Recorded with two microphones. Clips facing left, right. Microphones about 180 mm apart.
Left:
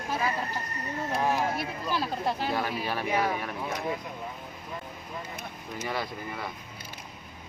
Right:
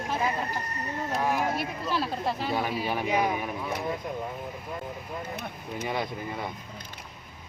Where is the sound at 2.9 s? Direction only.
15° right (ahead or behind).